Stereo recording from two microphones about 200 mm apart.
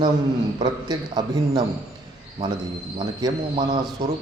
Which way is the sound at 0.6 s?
20° right (ahead or behind).